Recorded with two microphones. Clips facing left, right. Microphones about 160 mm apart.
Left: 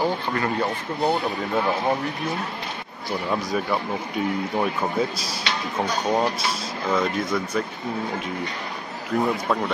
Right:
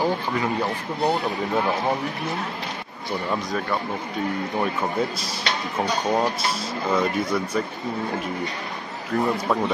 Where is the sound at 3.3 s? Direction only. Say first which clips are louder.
Left 2 dB; 5° left (ahead or behind).